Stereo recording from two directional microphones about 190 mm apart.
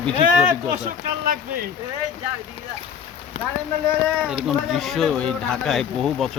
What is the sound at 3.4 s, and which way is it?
Speech, 35° left (ahead or behind).